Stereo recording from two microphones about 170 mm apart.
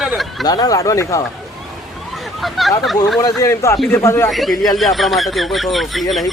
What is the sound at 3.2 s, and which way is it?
Speech, 20° left (ahead or behind).